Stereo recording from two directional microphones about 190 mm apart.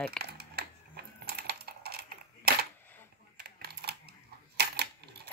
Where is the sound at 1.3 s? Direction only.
55° right (ahead or behind).